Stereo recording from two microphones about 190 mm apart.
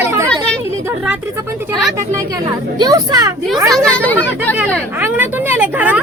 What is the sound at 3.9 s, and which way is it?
Speech, 10° left (ahead or behind).